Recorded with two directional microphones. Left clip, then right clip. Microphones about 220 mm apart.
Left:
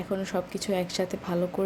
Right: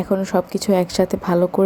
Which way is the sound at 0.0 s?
20° right (ahead or behind).